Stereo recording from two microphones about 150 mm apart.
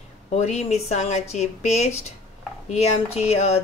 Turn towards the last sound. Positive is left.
turn(degrees=45)  # may be behind; listen again after turning